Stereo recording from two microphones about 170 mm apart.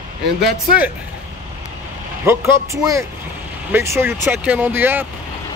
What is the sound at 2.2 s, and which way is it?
Speech, 15° right (ahead or behind).